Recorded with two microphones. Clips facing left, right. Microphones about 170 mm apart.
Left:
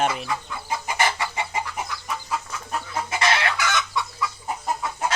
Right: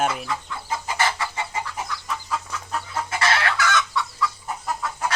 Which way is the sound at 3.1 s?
20° left (ahead or behind).